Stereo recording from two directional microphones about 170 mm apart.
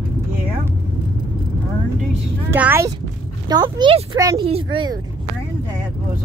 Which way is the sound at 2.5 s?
10° right (ahead or behind).